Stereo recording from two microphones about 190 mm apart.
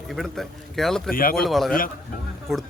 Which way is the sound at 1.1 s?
50° left (ahead or behind).